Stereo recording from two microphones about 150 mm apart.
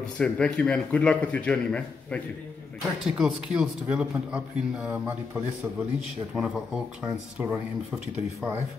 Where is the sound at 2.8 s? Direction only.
5° right (ahead or behind).